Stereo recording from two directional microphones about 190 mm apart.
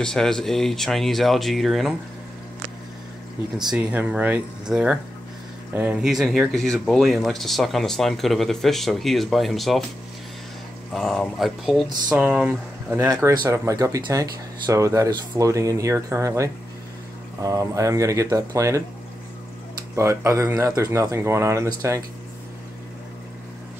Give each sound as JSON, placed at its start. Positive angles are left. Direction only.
{"t": 0.0, "sound": "speech", "side_deg": 5}
{"t": 3.7, "sound": "speech", "side_deg": -5}
{"t": 10.9, "sound": "speech", "side_deg": 0}
{"t": 20.0, "sound": "speech", "side_deg": -15}